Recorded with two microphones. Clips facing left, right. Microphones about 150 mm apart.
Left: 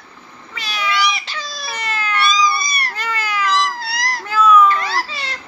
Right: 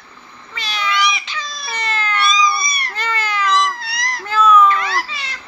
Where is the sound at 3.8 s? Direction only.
35° left (ahead or behind).